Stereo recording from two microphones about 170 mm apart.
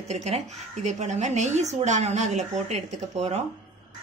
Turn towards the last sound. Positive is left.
turn(degrees=-40)  # may be behind; listen again after turning